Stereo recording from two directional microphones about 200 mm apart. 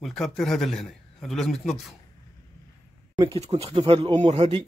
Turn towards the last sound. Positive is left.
turn(degrees=-30)  # may be behind; listen again after turning